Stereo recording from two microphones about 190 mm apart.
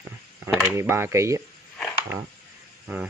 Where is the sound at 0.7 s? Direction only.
10° right (ahead or behind).